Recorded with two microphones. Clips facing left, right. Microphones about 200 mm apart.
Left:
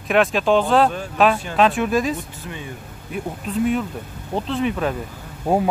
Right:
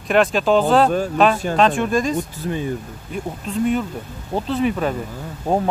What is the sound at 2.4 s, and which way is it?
Speech, 40° right (ahead or behind).